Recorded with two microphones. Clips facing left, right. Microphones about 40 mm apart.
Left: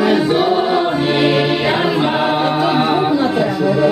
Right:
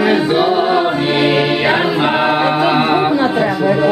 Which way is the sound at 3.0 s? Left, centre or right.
Right.